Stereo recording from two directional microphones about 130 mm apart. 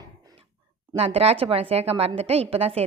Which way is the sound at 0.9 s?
50° right (ahead or behind).